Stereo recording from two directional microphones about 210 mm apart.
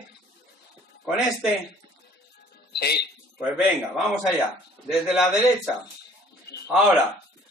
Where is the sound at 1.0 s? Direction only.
Centre (ahead or behind).